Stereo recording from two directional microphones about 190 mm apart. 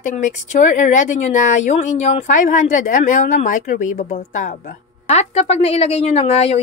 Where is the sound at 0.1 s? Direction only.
40° left (ahead or behind).